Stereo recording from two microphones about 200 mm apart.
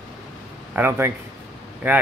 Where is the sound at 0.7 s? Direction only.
10° right (ahead or behind).